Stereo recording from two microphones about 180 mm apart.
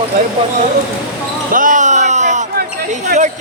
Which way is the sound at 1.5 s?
45° right (ahead or behind).